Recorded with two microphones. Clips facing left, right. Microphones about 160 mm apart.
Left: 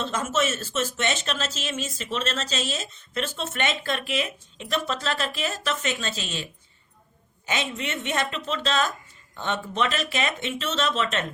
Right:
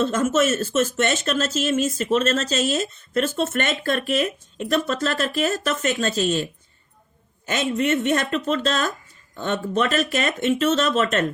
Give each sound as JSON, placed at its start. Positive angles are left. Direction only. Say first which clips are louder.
{"t": 0.0, "sound": "speech", "louder": "right 6 dB", "side_deg": -45}